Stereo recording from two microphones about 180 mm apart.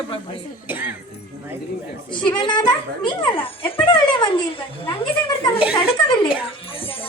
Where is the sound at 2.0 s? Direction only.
25° left (ahead or behind).